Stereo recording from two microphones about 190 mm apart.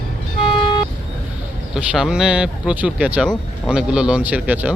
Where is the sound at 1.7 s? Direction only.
5° right (ahead or behind).